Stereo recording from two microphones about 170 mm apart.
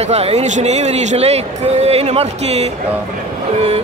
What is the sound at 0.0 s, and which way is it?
Speech, 40° right (ahead or behind).